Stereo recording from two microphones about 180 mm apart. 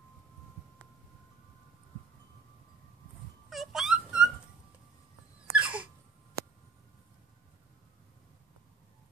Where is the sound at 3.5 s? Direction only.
Centre (ahead or behind).